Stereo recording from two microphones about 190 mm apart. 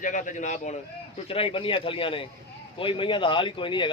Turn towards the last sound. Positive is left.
turn(degrees=25)  # may be behind; listen again after turning